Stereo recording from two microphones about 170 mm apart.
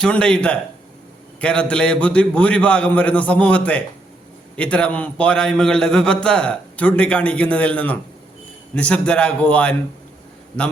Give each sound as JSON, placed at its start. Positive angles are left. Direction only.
{"t": 0.0, "sound": "a man's voice", "side_deg": 5}